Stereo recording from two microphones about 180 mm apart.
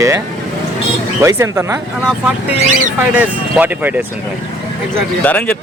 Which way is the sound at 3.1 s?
10° right (ahead or behind).